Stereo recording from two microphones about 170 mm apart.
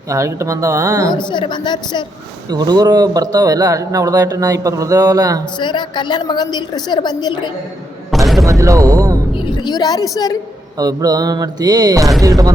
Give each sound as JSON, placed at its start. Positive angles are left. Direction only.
{"t": 0.1, "sound": "speech", "side_deg": -15}
{"t": 1.1, "sound": "a woman's voice", "side_deg": 25}
{"t": 2.5, "sound": "speech", "side_deg": -25}
{"t": 5.5, "sound": "a woman's voice", "side_deg": 25}
{"t": 8.1, "sound": "a sound", "side_deg": 0}
{"t": 8.4, "sound": "speech", "side_deg": -20}
{"t": 9.4, "sound": "a woman's voice", "side_deg": 25}
{"t": 10.8, "sound": "speech", "side_deg": -20}